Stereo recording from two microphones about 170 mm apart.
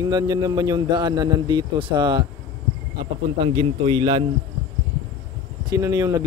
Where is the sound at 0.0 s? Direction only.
20° right (ahead or behind).